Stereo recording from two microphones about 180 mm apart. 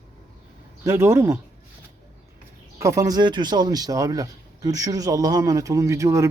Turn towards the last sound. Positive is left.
turn(degrees=-15)  # may be behind; listen again after turning